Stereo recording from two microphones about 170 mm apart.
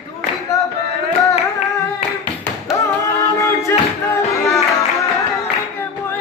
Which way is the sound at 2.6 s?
20° left (ahead or behind).